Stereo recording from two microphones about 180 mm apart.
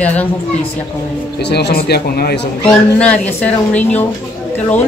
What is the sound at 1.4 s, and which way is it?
Speech, 65° left (ahead or behind).